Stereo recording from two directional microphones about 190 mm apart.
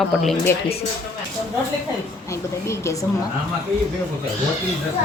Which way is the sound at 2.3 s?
15° left (ahead or behind).